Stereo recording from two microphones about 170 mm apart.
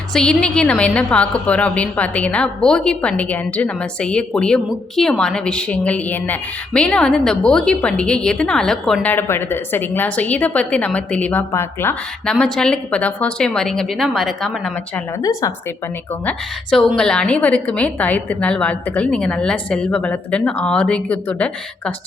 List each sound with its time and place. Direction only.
0.1 s a woman's voice: 5° left (ahead or behind)
15.2 s a woman's voice: 20° left (ahead or behind)
16.7 s a woman's voice: 5° left (ahead or behind)